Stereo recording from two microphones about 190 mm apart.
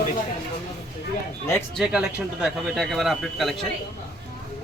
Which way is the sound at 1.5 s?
Centre (ahead or behind).